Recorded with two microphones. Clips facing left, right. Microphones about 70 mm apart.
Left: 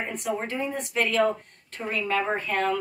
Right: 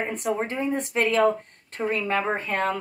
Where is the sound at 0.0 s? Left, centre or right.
Right.